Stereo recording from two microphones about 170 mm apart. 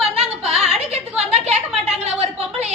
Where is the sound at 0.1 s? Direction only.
35° right (ahead or behind).